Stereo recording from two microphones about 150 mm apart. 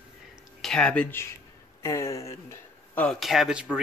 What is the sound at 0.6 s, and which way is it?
Speech, 5° left (ahead or behind).